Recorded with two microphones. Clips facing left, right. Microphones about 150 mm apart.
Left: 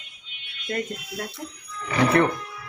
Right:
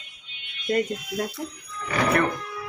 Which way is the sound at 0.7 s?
20° right (ahead or behind).